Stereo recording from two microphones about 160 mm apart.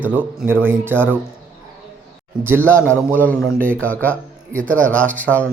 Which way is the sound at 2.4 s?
15° right (ahead or behind).